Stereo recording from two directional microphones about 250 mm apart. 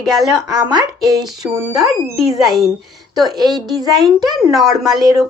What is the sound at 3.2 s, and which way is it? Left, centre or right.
Speech, centre.